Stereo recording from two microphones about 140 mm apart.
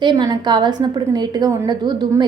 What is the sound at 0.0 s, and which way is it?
A woman's voice, 30° right (ahead or behind).